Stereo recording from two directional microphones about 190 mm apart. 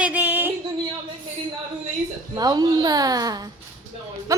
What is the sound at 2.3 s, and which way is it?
A woman's voice, 20° right (ahead or behind).